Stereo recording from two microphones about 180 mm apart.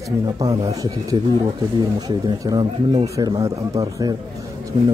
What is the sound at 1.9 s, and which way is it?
Speech, 20° right (ahead or behind).